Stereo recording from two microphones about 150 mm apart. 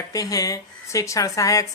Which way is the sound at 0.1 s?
25° left (ahead or behind).